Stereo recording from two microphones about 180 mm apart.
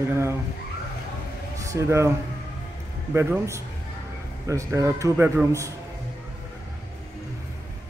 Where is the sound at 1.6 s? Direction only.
15° right (ahead or behind).